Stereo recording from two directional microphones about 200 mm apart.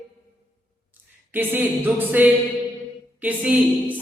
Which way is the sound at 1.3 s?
10° right (ahead or behind).